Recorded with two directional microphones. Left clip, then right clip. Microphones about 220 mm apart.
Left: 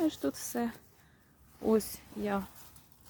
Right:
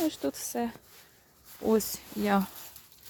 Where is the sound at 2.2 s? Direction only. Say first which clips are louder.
Right 7 dB; 45° right (ahead or behind).